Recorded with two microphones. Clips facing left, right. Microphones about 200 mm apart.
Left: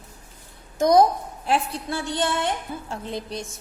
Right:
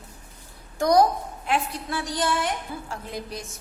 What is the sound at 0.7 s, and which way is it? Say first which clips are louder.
Speech: left 2 dB; 20° left (ahead or behind).